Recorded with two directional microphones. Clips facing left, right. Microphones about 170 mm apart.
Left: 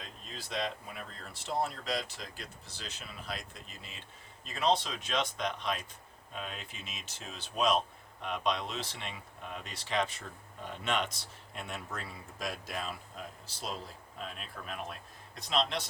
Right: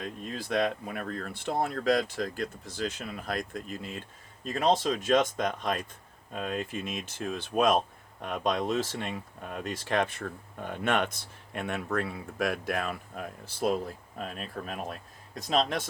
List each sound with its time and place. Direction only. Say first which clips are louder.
0.0 s speech: right 10 dB; 55° right (ahead or behind)